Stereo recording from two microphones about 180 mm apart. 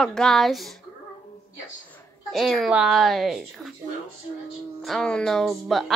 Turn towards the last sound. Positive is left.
turn(degrees=0)  # may be behind; listen again after turning